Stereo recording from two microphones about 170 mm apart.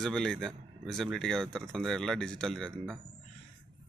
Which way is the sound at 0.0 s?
5° left (ahead or behind).